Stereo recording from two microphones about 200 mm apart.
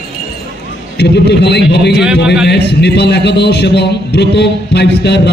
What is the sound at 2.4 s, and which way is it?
A man's voice, 55° left (ahead or behind).